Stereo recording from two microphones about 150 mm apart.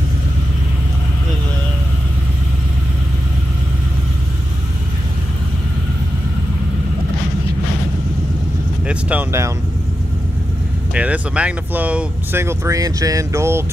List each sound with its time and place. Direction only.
8.8 s vehicle: 10° right (ahead or behind)
11.0 s speech: 10° right (ahead or behind)